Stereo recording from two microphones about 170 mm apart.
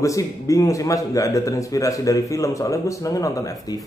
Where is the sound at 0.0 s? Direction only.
20° left (ahead or behind).